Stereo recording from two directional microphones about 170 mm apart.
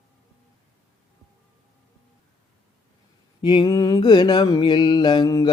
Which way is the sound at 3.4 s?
25° left (ahead or behind).